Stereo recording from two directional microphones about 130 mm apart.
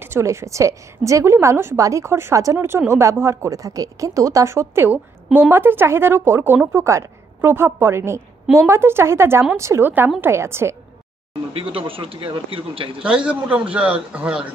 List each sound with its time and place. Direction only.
0.0 s a woman's voice: 20° right (ahead or behind)
11.5 s a man's voice: 45° right (ahead or behind)
13.0 s a man's voice: 5° right (ahead or behind)